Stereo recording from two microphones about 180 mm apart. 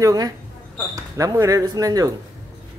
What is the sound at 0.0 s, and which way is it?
Speech, 20° right (ahead or behind).